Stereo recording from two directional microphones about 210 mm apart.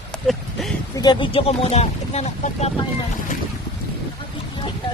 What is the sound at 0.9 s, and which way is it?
Speech, 20° left (ahead or behind).